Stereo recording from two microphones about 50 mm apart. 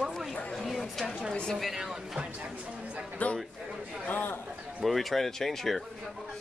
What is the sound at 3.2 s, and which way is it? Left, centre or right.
Speech, left.